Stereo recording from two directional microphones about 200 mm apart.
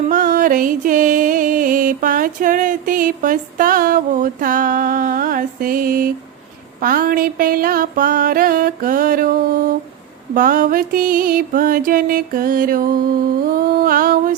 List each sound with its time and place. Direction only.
0.1 s music: 45° right (ahead or behind)